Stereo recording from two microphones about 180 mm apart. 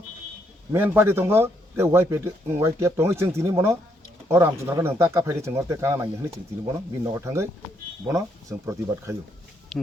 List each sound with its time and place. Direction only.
0.7 s a man's voice: 10° right (ahead or behind)
9.7 s speech: centre (ahead or behind)